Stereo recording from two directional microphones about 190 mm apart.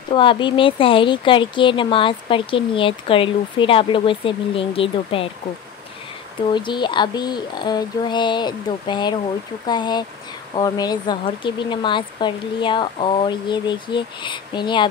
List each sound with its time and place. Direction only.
0.1 s speech: 25° left (ahead or behind)
6.5 s speech: 25° left (ahead or behind)